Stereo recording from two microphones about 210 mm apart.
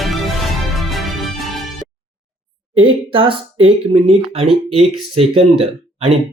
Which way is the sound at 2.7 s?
25° right (ahead or behind).